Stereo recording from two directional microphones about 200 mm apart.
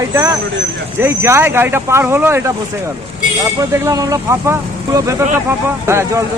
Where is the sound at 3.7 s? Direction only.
15° right (ahead or behind).